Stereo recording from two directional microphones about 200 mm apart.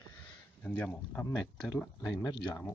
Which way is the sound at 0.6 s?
10° left (ahead or behind).